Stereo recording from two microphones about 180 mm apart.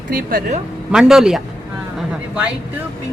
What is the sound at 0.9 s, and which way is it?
Speech, 5° right (ahead or behind).